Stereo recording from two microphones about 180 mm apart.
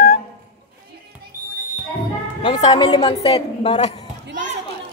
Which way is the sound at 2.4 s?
30° left (ahead or behind).